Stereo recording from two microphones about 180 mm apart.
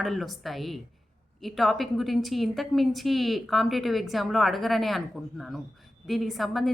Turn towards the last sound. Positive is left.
turn(degrees=0)  # may be behind; listen again after turning